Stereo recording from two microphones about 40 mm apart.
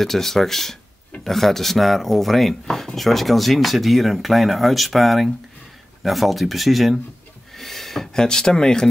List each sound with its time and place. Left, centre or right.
0.0 s speech: centre
7.5 s a sound: centre
8.1 s speech: centre